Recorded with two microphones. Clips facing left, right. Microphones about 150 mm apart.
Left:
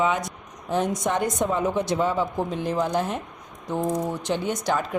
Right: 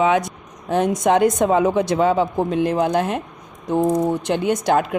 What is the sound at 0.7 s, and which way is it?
A woman's voice, 65° right (ahead or behind).